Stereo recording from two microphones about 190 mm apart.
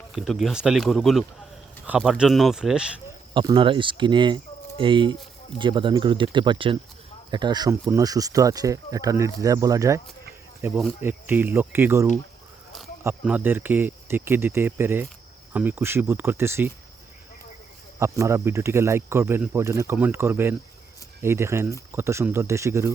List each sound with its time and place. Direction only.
0.1 s speech: centre (ahead or behind)
3.3 s speech: 25° right (ahead or behind)
18.0 s speech: 15° right (ahead or behind)